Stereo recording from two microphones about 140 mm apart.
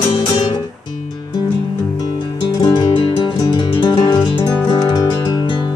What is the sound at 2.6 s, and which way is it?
Music, 30° left (ahead or behind).